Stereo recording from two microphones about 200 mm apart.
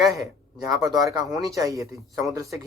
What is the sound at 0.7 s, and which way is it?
Speech, 20° right (ahead or behind).